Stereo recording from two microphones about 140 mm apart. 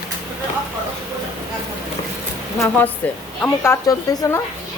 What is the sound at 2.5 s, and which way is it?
A woman's voice, 15° left (ahead or behind).